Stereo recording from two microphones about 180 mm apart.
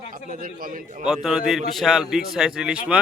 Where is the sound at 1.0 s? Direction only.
5° right (ahead or behind).